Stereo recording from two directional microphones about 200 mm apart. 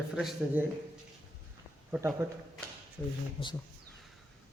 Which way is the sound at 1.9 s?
10° right (ahead or behind).